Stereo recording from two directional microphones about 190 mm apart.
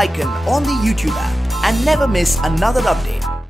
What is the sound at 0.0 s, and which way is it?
Speech, centre (ahead or behind).